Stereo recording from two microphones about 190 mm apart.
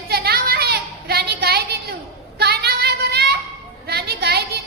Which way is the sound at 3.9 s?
55° right (ahead or behind).